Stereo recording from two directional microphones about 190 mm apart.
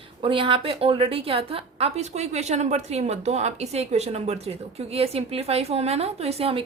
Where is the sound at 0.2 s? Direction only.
25° right (ahead or behind).